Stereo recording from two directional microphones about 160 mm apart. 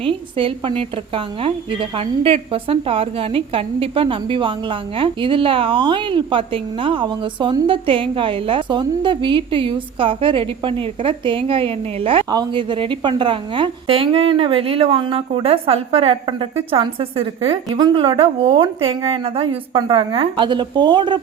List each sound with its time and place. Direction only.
0.0 s a woman's voice: 35° right (ahead or behind)
17.7 s a woman's voice: 25° right (ahead or behind)